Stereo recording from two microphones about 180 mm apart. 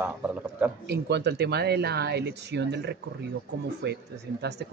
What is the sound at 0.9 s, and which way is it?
Speech, 65° right (ahead or behind).